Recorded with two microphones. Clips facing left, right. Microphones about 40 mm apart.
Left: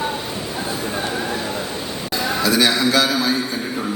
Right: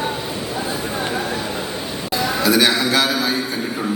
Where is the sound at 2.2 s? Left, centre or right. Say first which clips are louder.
Right 1 dB; centre.